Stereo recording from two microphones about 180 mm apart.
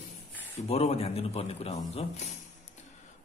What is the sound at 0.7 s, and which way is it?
Speech, 35° left (ahead or behind).